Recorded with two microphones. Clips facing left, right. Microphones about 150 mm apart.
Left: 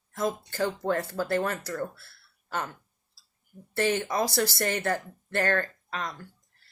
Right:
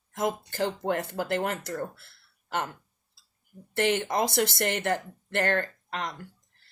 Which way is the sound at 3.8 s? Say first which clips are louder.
Right 1 dB; 20° right (ahead or behind).